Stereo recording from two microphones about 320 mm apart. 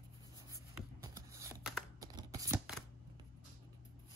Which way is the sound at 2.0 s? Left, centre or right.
Centre.